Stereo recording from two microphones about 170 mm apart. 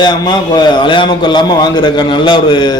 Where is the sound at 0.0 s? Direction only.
25° left (ahead or behind).